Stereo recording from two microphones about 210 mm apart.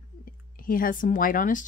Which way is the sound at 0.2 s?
40° left (ahead or behind).